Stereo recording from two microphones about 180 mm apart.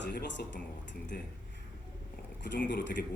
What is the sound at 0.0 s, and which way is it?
Speech, 75° left (ahead or behind).